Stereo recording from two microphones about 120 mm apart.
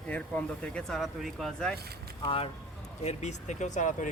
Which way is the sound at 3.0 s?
70° left (ahead or behind).